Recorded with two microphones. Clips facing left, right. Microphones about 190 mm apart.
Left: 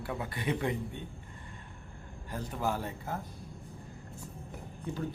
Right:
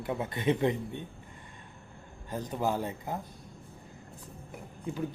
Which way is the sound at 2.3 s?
20° right (ahead or behind).